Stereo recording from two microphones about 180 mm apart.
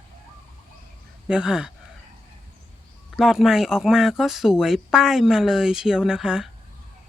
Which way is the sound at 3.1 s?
Centre (ahead or behind).